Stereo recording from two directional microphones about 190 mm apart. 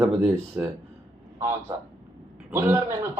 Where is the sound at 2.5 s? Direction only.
10° right (ahead or behind).